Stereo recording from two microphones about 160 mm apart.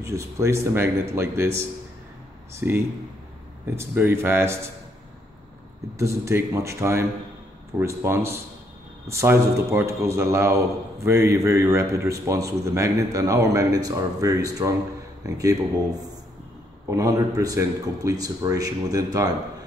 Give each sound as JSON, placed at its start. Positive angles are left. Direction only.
{"t": 0.0, "sound": "speech", "side_deg": -20}
{"t": 2.5, "sound": "speech", "side_deg": -15}
{"t": 5.9, "sound": "speech", "side_deg": -20}